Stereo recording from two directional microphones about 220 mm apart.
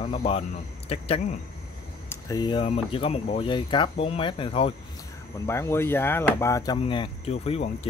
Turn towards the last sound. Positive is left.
turn(degrees=25)  # may be behind; listen again after turning